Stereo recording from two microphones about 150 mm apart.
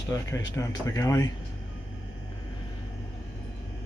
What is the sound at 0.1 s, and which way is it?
Speech, 20° left (ahead or behind).